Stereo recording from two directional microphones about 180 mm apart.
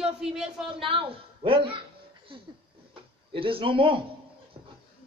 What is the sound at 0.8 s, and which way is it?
Speech, 30° right (ahead or behind).